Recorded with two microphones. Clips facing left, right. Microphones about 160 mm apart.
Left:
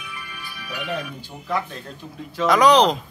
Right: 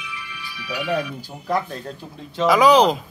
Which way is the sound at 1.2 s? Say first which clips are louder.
Right 3 dB; 40° right (ahead or behind).